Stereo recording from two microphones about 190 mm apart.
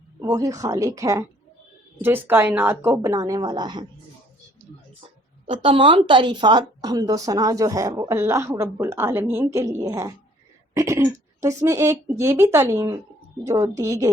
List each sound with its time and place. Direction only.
0.2 s speech: 20° right (ahead or behind)
5.5 s speech: 25° right (ahead or behind)